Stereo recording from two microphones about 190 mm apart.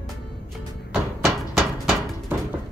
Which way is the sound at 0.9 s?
Centre (ahead or behind).